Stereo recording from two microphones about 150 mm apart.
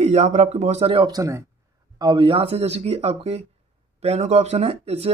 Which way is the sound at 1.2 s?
20° right (ahead or behind).